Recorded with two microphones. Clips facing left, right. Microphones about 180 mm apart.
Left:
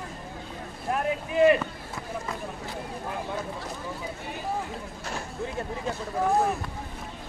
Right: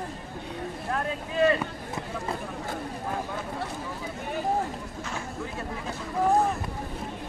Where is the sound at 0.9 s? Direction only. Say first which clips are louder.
Left 4 dB; 20° left (ahead or behind).